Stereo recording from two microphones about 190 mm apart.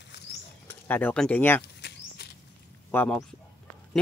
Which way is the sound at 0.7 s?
10° left (ahead or behind).